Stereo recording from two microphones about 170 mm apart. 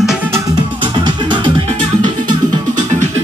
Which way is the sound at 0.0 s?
5° right (ahead or behind).